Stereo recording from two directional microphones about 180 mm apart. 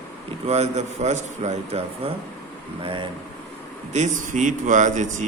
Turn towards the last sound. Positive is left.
turn(degrees=-45)  # may be behind; listen again after turning